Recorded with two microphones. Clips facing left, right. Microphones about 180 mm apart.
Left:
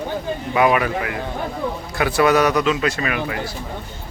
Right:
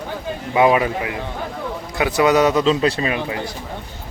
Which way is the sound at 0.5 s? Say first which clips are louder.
Right 2 dB; 20° right (ahead or behind).